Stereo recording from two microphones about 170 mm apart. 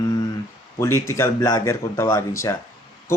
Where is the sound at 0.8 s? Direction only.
15° left (ahead or behind).